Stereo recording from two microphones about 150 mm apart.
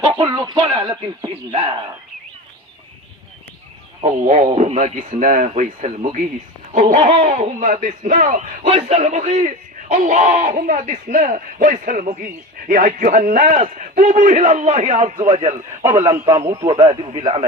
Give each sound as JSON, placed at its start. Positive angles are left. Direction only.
{"t": 0.0, "sound": "speech", "side_deg": -30}
{"t": 4.0, "sound": "a man's voice", "side_deg": -50}
{"t": 4.9, "sound": "a man's voice", "side_deg": -60}
{"t": 8.6, "sound": "a man's voice", "side_deg": -40}
{"t": 13.7, "sound": "a man's voice", "side_deg": -55}
{"t": 15.3, "sound": "speech", "side_deg": -40}
{"t": 15.8, "sound": "a man's voice", "side_deg": -15}
{"t": 16.7, "sound": "speech", "side_deg": -35}